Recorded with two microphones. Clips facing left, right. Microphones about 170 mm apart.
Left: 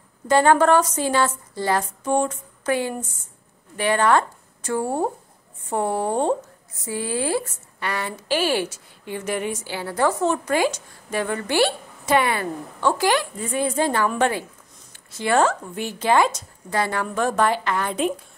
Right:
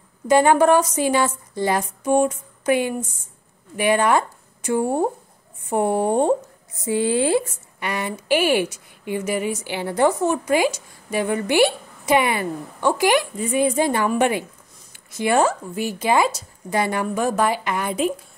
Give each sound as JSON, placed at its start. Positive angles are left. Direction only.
{"t": 0.3, "sound": "a woman's voice", "side_deg": -15}
{"t": 9.7, "sound": "a woman's voice", "side_deg": -20}